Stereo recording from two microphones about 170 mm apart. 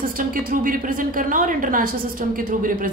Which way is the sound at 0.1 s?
55° right (ahead or behind).